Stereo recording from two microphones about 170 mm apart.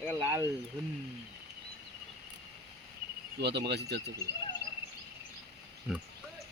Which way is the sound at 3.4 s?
80° right.